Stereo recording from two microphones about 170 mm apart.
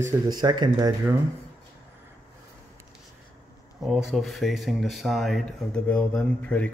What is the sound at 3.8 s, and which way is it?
Speech, 5° right (ahead or behind).